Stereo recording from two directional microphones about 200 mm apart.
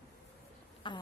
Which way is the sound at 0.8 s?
25° left (ahead or behind).